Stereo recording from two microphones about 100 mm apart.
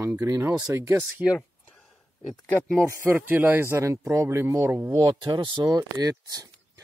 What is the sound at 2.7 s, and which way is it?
Speech, 20° right (ahead or behind).